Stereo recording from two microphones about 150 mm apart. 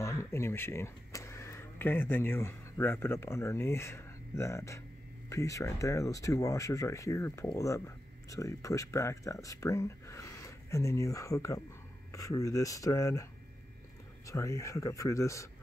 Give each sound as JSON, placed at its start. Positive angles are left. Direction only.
{"t": 0.0, "sound": "speech", "side_deg": 20}